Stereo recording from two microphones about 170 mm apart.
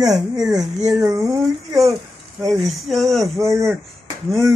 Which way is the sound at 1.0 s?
20° right (ahead or behind).